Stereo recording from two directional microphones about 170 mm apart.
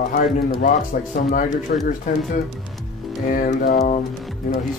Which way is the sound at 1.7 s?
55° left (ahead or behind).